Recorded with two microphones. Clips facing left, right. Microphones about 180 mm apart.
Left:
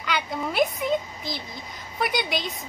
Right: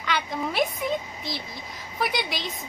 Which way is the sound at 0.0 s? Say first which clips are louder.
Even; centre (ahead or behind).